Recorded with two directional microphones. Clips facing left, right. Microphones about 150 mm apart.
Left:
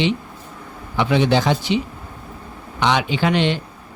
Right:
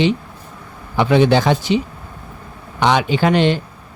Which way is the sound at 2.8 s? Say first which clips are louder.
Right 3 dB; 45° right (ahead or behind).